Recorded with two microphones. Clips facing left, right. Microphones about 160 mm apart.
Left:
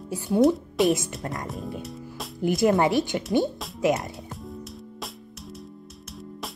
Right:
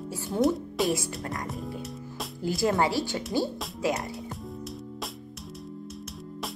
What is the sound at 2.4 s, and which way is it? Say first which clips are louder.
Speech: left 5 dB; 20° left (ahead or behind).